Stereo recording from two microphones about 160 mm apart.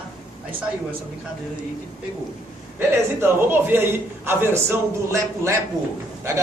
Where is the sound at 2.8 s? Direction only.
15° right (ahead or behind).